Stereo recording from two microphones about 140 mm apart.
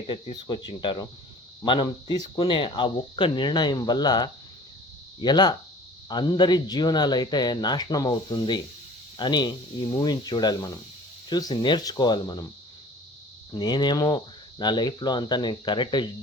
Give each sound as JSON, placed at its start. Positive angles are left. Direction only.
{"t": 0.1, "sound": "speech", "side_deg": 35}
{"t": 13.5, "sound": "speech", "side_deg": 30}